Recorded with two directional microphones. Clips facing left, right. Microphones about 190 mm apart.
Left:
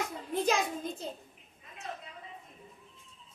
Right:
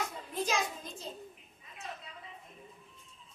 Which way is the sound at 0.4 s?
60° left (ahead or behind).